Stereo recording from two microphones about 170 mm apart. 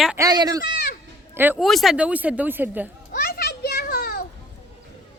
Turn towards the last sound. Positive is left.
turn(degrees=60)  # may be behind; listen again after turning